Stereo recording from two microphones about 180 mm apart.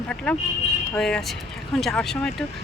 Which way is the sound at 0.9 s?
5° left (ahead or behind).